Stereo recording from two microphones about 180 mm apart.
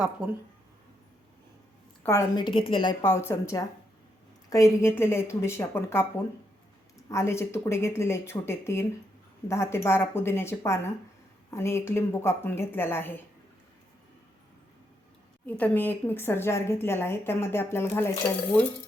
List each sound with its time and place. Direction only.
0.2 s speech: 5° right (ahead or behind)
2.0 s a woman's voice: 20° left (ahead or behind)
3.0 s a woman's voice: 15° left (ahead or behind)
7.1 s a woman's voice: 15° left (ahead or behind)
15.4 s a woman's voice: 10° left (ahead or behind)